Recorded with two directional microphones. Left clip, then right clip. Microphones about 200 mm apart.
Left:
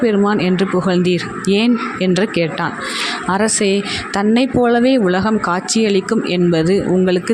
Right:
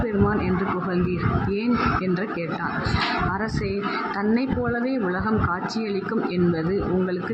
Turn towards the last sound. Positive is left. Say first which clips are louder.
# left 10 dB
turn(degrees=50)  # may be behind; listen again after turning